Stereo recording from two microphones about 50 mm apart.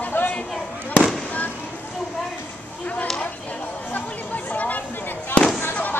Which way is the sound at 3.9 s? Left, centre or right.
Left.